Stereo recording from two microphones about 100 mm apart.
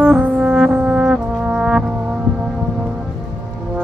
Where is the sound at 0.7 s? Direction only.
15° right (ahead or behind).